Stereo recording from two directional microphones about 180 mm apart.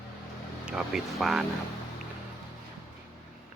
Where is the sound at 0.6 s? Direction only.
5° right (ahead or behind).